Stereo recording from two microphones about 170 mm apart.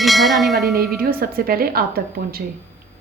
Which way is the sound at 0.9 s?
60° right (ahead or behind).